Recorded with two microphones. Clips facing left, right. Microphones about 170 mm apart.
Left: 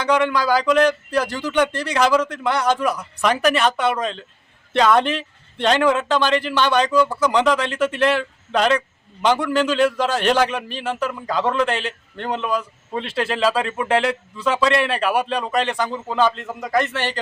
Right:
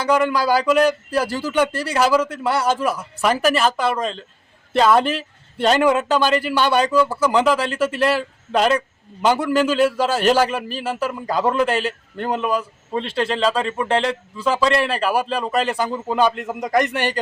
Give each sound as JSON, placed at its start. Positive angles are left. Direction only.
{"t": 0.0, "sound": "a man's voice", "side_deg": -5}